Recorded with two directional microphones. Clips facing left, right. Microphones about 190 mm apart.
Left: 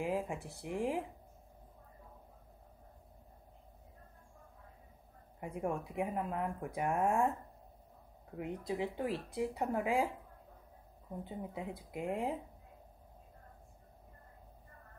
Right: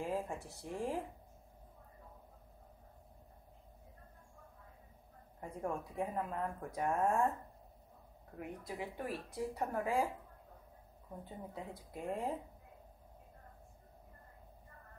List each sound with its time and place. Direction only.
0.0 s speech: 15° left (ahead or behind)
5.4 s speech: 15° left (ahead or behind)
8.4 s speech: 25° left (ahead or behind)
11.2 s speech: 15° left (ahead or behind)